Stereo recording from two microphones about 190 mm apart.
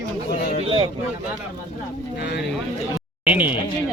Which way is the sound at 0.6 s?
30° right (ahead or behind).